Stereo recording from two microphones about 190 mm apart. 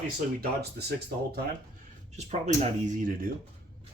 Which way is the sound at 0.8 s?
60° right (ahead or behind).